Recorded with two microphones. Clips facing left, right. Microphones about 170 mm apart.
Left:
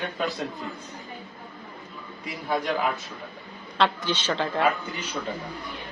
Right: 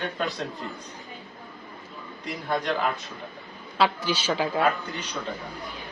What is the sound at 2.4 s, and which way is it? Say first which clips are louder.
Speech: left 1 dB; 5° left (ahead or behind).